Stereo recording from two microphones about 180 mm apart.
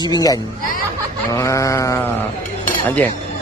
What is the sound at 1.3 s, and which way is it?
Sheep, 15° left (ahead or behind).